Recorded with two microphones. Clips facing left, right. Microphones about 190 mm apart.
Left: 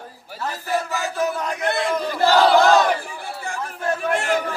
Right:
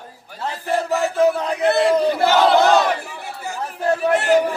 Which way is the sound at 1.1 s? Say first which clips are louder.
Right 6 dB; 30° right (ahead or behind).